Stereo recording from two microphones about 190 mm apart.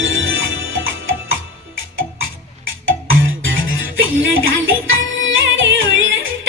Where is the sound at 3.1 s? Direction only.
90° right.